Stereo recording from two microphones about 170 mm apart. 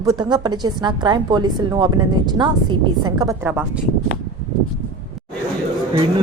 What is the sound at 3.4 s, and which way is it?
Speech, 10° right (ahead or behind).